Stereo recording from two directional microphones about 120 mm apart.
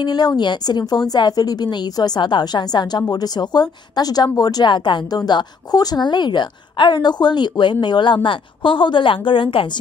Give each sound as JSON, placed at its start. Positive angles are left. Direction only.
{"t": 0.0, "sound": "a woman's voice", "side_deg": 35}